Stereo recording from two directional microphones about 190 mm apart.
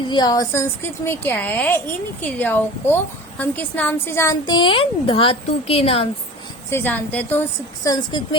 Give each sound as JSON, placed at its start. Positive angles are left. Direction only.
{"t": 0.1, "sound": "a woman's voice", "side_deg": 20}
{"t": 6.7, "sound": "a woman's voice", "side_deg": 10}
{"t": 7.9, "sound": "speech", "side_deg": 25}